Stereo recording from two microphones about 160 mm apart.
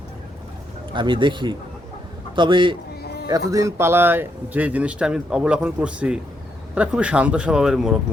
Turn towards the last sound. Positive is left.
turn(degrees=-5)  # may be behind; listen again after turning